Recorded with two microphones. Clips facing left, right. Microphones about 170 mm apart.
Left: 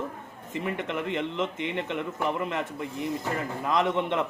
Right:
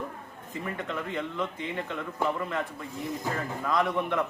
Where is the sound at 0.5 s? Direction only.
20° left (ahead or behind).